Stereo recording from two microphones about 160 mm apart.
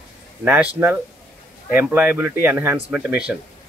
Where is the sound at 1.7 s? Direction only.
10° right (ahead or behind).